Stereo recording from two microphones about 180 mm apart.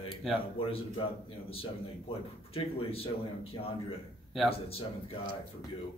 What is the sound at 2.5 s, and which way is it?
Speech, 30° left (ahead or behind).